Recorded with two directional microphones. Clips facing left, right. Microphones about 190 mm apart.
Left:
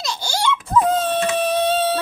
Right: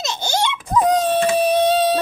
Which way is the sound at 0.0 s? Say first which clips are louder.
Right 2 dB; 20° right (ahead or behind).